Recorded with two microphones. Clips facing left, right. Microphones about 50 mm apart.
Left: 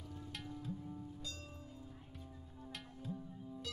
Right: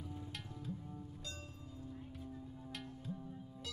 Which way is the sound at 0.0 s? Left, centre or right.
Centre.